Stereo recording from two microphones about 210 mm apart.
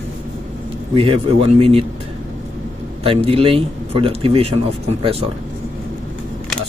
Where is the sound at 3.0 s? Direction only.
25° right (ahead or behind).